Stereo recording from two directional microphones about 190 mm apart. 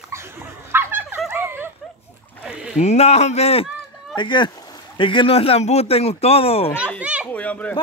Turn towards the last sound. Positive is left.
turn(degrees=10)  # may be behind; listen again after turning